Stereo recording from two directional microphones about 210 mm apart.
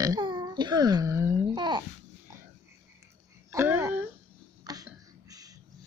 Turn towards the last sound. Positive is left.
turn(degrees=-15)  # may be behind; listen again after turning